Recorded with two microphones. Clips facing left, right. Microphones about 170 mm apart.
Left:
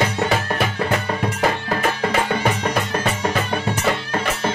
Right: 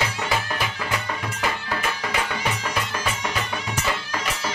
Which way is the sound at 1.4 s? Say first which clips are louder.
Left 6 dB; 50° left (ahead or behind).